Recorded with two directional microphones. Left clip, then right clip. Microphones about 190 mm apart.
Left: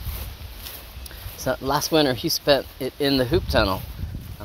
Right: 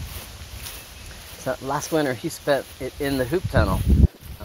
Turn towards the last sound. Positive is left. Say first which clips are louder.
# left 2 dB
turn(degrees=30)  # may be behind; listen again after turning